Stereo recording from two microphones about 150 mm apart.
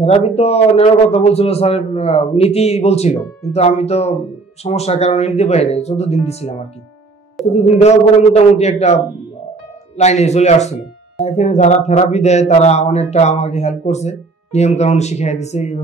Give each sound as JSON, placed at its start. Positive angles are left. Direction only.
{"t": 0.0, "sound": "speech", "side_deg": 45}